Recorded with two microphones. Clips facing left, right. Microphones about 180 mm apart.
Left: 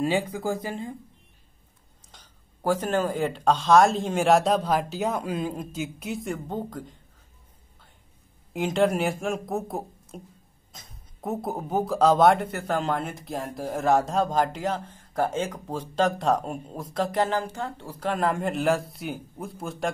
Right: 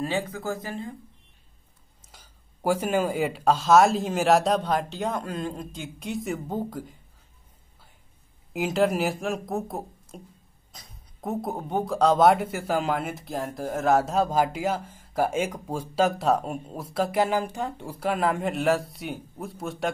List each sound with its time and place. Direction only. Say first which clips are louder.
0.0 s speech: left 3 dB; 15° left (ahead or behind)
2.1 s speech: even; 10° right (ahead or behind)
8.5 s speech: even; centre (ahead or behind)